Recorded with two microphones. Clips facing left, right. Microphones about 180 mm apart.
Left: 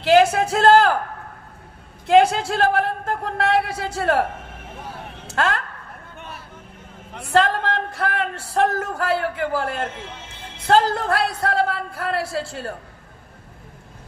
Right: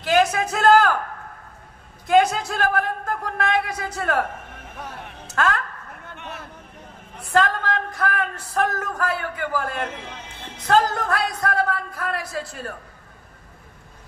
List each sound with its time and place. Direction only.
0.0 s speech: 30° left (ahead or behind)
2.0 s speech: 30° left (ahead or behind)
5.2 s a sound: 30° left (ahead or behind)
7.2 s speech: 30° left (ahead or behind)